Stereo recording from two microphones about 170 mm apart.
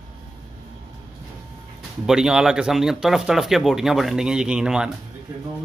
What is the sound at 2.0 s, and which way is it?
Speech, 5° right (ahead or behind).